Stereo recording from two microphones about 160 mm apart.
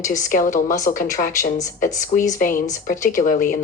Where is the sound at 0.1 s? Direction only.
55° left (ahead or behind).